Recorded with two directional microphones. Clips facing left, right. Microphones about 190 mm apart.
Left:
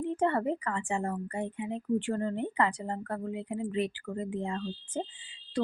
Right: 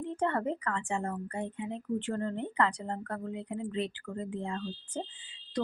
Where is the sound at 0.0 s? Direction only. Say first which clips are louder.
Left 3 dB; 15° left (ahead or behind).